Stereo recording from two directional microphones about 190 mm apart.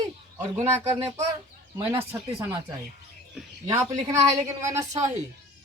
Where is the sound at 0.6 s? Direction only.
15° right (ahead or behind).